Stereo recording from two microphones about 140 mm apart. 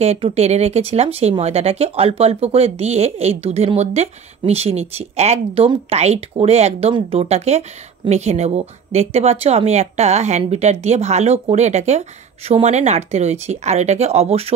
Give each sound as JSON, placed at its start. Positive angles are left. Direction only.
{"t": 0.0, "sound": "speech", "side_deg": -50}